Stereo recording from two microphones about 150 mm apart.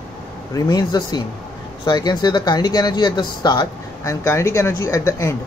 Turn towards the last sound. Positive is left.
turn(degrees=20)  # may be behind; listen again after turning